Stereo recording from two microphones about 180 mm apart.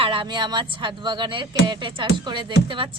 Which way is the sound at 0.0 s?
30° right (ahead or behind).